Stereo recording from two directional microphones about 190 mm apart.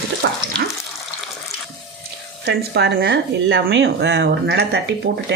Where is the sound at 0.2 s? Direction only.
65° right (ahead or behind).